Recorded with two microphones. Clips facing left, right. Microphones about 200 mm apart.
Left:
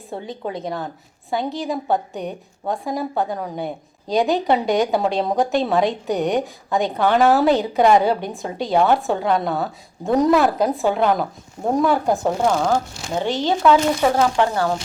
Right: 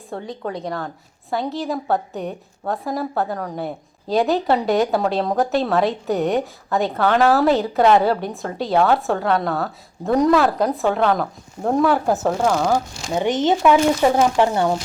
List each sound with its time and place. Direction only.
0.1 s a woman's voice: 5° left (ahead or behind)
1.3 s a woman's voice: centre (ahead or behind)
8.7 s speech: 15° left (ahead or behind)
9.0 s a woman's voice: centre (ahead or behind)
10.2 s speech: 15° left (ahead or behind)
10.6 s a woman's voice: centre (ahead or behind)
12.6 s speech: 15° right (ahead or behind)